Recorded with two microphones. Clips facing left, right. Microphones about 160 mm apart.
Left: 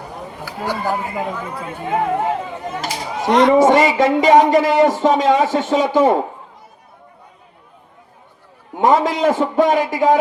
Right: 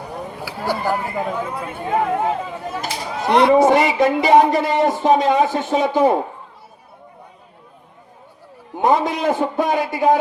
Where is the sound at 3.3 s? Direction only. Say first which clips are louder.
Left 1 dB; 10° right (ahead or behind).